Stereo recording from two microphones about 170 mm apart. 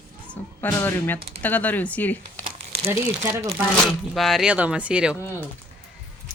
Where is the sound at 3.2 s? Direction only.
15° right (ahead or behind).